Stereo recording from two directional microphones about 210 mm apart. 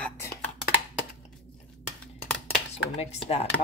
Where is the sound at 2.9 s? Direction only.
30° left (ahead or behind).